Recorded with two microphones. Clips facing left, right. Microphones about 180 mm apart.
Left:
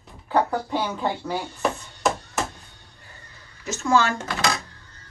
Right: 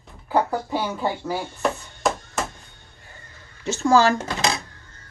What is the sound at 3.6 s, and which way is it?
Speech, 30° right (ahead or behind).